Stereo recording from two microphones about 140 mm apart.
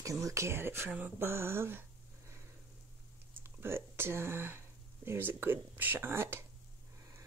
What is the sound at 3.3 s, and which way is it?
Speech, 15° right (ahead or behind).